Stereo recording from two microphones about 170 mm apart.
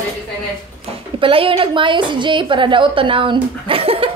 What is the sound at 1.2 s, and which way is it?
A woman's voice, 30° right (ahead or behind).